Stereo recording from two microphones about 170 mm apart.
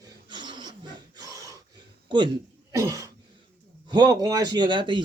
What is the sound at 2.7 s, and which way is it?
Cough, 20° right (ahead or behind).